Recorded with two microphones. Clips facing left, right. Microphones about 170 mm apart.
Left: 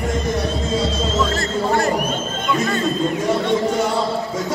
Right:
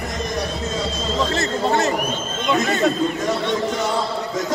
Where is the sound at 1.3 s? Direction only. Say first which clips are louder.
Even; 20° right (ahead or behind).